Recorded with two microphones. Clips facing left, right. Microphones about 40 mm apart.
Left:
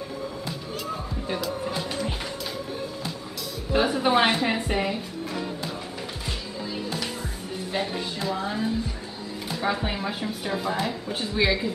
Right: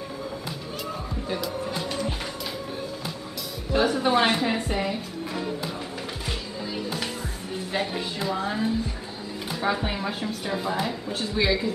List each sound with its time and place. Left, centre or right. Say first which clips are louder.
1.4 s music: even; centre
3.7 s a woman's voice: even; centre
4.9 s music: even; centre
7.7 s a woman's voice: even; centre